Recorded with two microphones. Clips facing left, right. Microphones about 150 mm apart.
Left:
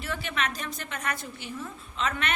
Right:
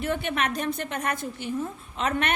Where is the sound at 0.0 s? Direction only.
55° right (ahead or behind).